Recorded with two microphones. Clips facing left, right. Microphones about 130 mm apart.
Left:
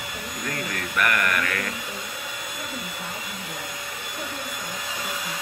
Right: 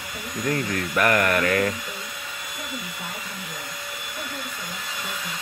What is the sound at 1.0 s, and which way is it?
Mantra, 35° right (ahead or behind).